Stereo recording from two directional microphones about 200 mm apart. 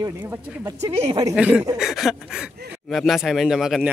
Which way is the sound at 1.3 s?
5° right (ahead or behind).